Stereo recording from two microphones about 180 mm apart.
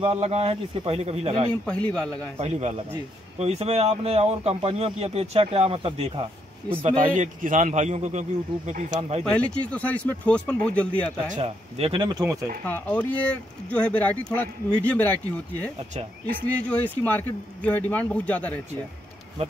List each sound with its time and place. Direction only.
0.0 s a man's voice: 35° right (ahead or behind)
1.5 s speech: 5° left (ahead or behind)
2.3 s a man's voice: 35° right (ahead or behind)
7.2 s a man's voice: 45° right (ahead or behind)
9.2 s speech: 5° left (ahead or behind)
11.3 s speech: 35° right (ahead or behind); by 12.4 s 20° right (ahead or behind)
12.6 s speech: 10° left (ahead or behind)